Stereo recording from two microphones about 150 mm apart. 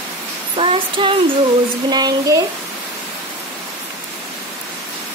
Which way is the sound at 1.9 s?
25° right (ahead or behind).